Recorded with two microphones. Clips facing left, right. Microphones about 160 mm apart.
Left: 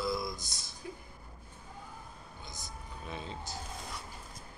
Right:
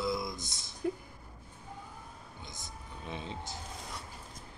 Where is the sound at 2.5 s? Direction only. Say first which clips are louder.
Left 1 dB; 20° right (ahead or behind).